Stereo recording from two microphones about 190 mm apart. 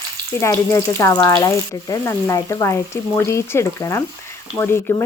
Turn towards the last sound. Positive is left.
turn(degrees=10)  # may be behind; listen again after turning